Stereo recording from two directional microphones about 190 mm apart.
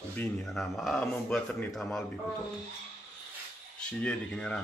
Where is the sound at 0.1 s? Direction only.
5° left (ahead or behind).